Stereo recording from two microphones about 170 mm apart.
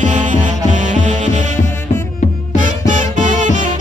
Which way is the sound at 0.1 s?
45° right (ahead or behind).